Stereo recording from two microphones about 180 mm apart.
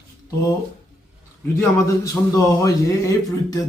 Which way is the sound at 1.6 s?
15° left (ahead or behind).